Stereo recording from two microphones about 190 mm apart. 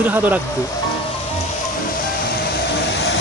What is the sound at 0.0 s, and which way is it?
Speech, 10° right (ahead or behind).